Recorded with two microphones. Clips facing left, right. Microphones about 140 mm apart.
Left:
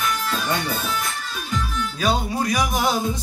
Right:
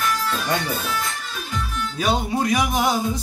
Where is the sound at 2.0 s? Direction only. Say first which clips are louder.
Right 1 dB; 20° right (ahead or behind).